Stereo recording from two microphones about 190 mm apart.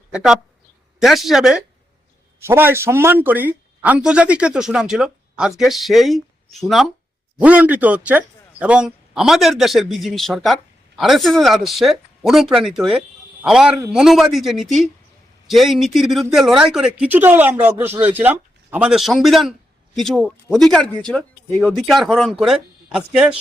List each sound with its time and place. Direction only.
0.1 s a man's voice: 5° right (ahead or behind)